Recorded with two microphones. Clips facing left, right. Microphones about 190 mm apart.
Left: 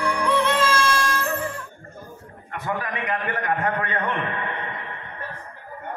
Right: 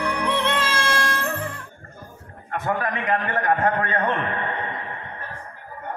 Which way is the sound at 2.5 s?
45° right (ahead or behind).